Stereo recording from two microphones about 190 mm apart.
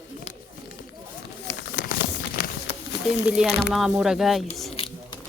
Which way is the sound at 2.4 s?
50° left (ahead or behind).